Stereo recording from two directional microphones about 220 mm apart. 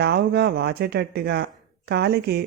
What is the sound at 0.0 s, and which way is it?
Speech, 45° right (ahead or behind).